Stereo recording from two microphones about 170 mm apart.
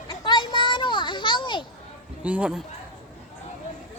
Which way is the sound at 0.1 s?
25° left (ahead or behind).